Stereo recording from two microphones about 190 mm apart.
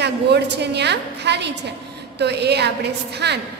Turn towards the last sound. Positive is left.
turn(degrees=-60)  # may be behind; listen again after turning